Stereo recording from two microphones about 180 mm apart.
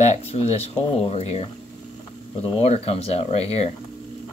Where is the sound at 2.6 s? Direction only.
35° left (ahead or behind).